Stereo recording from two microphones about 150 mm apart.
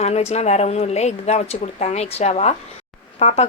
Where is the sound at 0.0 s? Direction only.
45° left (ahead or behind).